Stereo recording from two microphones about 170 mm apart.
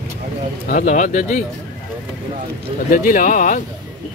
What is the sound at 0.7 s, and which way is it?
Speech, 50° left (ahead or behind).